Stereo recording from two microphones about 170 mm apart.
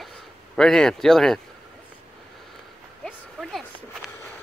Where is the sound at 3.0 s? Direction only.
Centre (ahead or behind).